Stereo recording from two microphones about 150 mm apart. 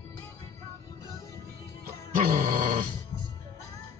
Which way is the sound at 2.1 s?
60° right (ahead or behind).